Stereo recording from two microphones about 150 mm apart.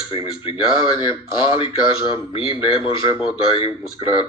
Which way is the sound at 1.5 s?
35° left (ahead or behind).